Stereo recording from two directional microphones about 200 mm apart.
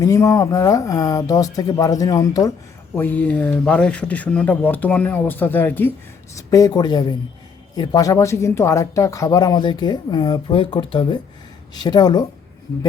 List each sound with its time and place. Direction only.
0.0 s speech: 15° left (ahead or behind)